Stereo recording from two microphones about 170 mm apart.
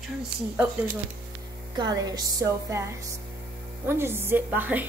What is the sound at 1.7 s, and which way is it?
A woman's voice, 25° right (ahead or behind).